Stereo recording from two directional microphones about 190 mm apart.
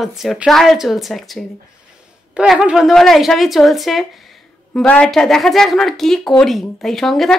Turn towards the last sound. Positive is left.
turn(degrees=0)  # may be behind; listen again after turning